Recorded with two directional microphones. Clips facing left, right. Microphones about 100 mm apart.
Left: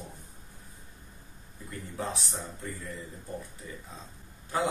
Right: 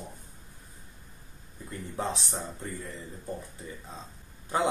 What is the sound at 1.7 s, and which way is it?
A man's voice, 30° right (ahead or behind).